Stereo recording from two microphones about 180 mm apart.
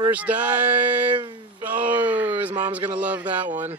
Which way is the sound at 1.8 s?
10° right (ahead or behind).